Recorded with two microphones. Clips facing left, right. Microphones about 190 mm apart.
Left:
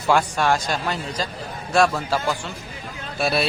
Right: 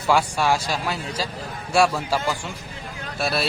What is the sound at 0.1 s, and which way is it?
Speech, 5° right (ahead or behind).